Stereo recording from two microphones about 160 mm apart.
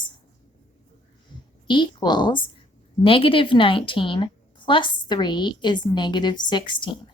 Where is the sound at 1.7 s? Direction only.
30° left (ahead or behind).